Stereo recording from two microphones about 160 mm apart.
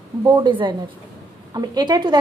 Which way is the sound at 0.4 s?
30° right (ahead or behind).